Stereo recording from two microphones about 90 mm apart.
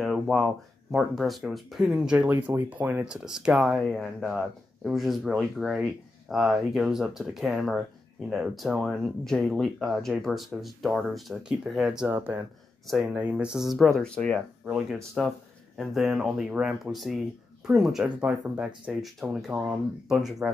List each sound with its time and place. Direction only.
0.0 s speech: centre (ahead or behind)
2.2 s speech: 20° right (ahead or behind)
3.1 s speech: 5° right (ahead or behind)
12.1 s speech: 25° right (ahead or behind)
12.8 s speech: centre (ahead or behind)
13.1 s speech: 20° right (ahead or behind)
13.5 s speech: 5° right (ahead or behind)